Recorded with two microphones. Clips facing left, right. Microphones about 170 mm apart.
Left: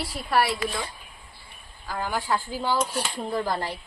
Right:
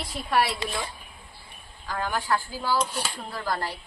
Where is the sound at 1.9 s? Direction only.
10° left (ahead or behind).